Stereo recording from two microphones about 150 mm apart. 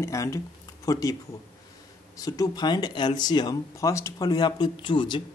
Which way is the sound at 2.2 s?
25° left (ahead or behind).